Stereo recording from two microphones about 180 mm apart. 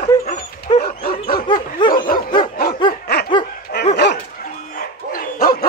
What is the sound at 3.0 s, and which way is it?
Dog, 60° left (ahead or behind).